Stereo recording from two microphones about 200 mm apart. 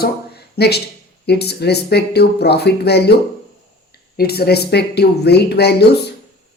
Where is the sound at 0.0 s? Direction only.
55° left (ahead or behind).